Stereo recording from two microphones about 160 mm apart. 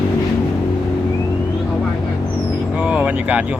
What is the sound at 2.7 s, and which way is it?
Speech, 5° right (ahead or behind).